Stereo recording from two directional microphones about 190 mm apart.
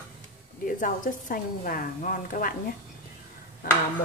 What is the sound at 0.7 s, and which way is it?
A woman's voice, 45° left (ahead or behind).